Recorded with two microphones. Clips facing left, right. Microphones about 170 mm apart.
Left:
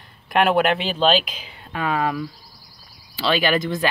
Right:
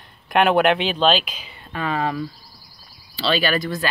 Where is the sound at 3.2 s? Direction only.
15° left (ahead or behind).